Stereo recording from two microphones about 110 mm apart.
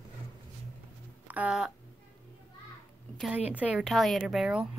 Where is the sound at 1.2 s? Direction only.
15° right (ahead or behind).